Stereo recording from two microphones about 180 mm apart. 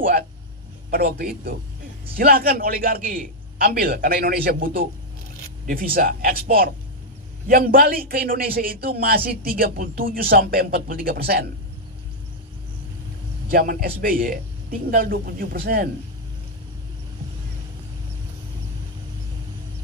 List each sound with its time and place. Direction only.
0.8 s a man's voice: 60° right (ahead or behind)
7.4 s a man's voice: 55° right (ahead or behind)
13.5 s a man's voice: 55° right (ahead or behind)